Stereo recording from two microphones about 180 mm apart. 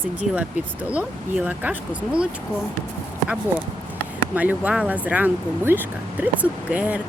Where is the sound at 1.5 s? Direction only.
10° right (ahead or behind).